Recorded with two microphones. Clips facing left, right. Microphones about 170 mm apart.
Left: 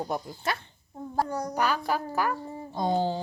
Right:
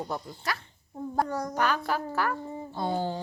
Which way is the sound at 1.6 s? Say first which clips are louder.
Left 1 dB; 10° left (ahead or behind).